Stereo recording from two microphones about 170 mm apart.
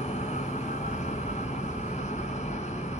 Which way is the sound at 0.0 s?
45° left (ahead or behind).